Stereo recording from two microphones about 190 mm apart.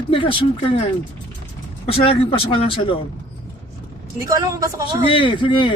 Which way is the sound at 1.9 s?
30° left (ahead or behind).